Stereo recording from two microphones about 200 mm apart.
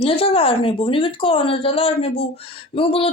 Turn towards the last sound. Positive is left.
turn(degrees=30)  # may be behind; listen again after turning